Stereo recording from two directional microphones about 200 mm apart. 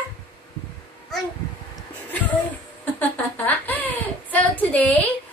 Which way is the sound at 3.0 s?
10° left (ahead or behind).